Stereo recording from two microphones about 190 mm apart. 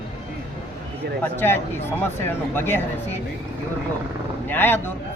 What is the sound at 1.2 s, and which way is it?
Speech, 10° left (ahead or behind).